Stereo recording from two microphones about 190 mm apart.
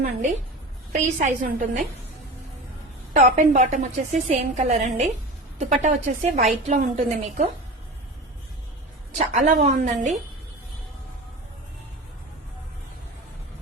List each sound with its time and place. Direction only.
0.0 s a woman's voice: 40° right (ahead or behind)
3.1 s a woman's voice: 40° right (ahead or behind)
9.1 s a woman's voice: 40° right (ahead or behind)